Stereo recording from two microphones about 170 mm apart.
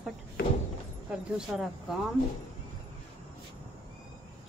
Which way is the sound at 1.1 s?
Centre (ahead or behind).